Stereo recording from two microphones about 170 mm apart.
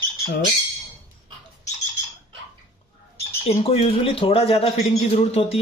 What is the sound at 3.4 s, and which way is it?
Speech, 35° left (ahead or behind).